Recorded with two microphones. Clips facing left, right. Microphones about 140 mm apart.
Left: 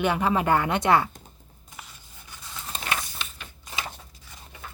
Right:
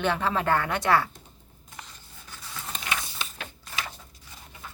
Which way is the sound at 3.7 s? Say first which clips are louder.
Left 2 dB; 25° left (ahead or behind).